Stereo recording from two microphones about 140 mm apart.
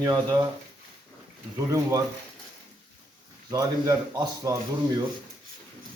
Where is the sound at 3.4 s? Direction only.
25° right (ahead or behind).